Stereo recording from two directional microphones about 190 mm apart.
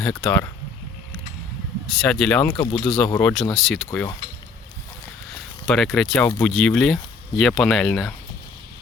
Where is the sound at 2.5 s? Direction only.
25° left (ahead or behind).